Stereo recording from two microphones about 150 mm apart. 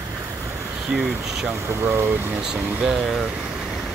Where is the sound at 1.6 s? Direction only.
15° right (ahead or behind).